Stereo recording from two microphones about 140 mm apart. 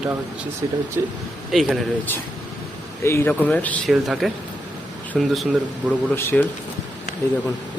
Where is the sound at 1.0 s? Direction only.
20° right (ahead or behind).